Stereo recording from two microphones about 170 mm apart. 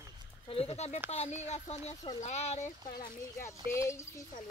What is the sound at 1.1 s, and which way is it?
Speech, 40° left (ahead or behind).